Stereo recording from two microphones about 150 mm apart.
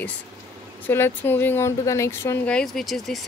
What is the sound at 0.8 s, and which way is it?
Speech, 15° left (ahead or behind).